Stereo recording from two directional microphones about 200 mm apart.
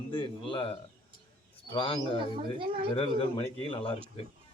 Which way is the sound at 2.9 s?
25° left (ahead or behind).